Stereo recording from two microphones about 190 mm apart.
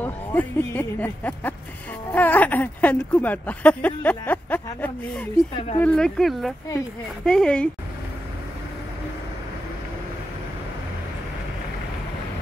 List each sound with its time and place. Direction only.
0.0 s speech: 10° left (ahead or behind)
5.5 s speech: 25° left (ahead or behind)
5.8 s speech: 5° left (ahead or behind)